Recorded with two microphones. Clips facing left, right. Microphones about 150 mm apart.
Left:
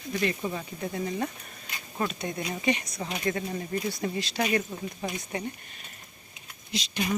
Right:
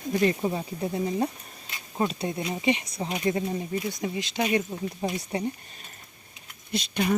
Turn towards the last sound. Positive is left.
turn(degrees=-55)  # may be behind; listen again after turning